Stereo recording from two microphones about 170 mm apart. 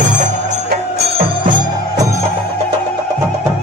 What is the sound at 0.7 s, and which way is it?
Music, 65° right (ahead or behind).